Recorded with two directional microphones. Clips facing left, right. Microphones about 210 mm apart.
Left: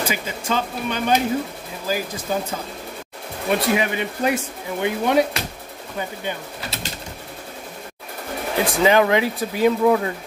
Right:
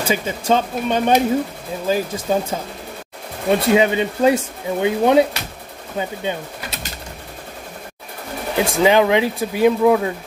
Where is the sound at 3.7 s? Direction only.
25° right (ahead or behind).